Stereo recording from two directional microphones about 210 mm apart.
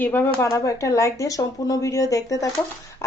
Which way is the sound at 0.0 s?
10° left (ahead or behind).